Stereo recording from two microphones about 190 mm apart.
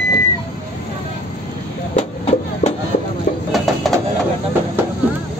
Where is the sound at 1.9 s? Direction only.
35° left (ahead or behind).